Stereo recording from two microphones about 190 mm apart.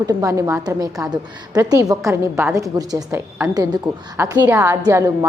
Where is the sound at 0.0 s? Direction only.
20° right (ahead or behind).